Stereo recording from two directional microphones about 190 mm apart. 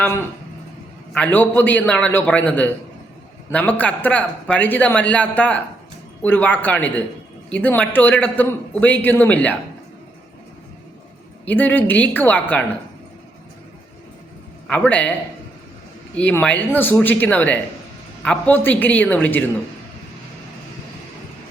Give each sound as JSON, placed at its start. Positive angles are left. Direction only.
{"t": 0.0, "sound": "speech", "side_deg": 10}
{"t": 11.4, "sound": "speech", "side_deg": 10}
{"t": 14.7, "sound": "speech", "side_deg": 10}
{"t": 16.1, "sound": "speech", "side_deg": 5}